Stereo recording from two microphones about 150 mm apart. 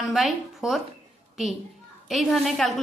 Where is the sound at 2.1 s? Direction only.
Centre (ahead or behind).